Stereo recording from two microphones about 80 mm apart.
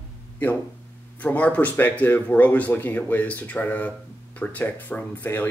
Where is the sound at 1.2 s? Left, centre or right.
Centre.